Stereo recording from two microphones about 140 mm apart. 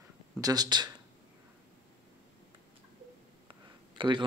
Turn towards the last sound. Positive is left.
turn(degrees=-35)  # may be behind; listen again after turning